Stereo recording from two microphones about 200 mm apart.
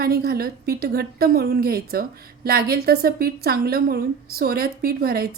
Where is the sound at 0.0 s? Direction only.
50° right (ahead or behind).